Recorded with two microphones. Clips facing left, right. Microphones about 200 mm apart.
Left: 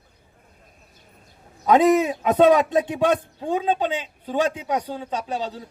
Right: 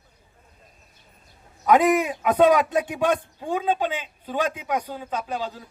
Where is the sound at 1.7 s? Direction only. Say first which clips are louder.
Left 2 dB; 25° left (ahead or behind).